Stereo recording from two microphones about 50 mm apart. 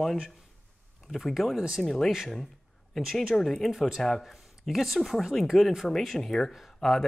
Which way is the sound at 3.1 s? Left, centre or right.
Centre.